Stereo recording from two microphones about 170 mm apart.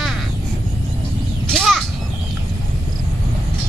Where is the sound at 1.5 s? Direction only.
Centre (ahead or behind).